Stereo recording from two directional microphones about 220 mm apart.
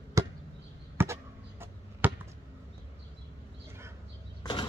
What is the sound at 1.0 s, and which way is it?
Basketball bounce, 10° right (ahead or behind).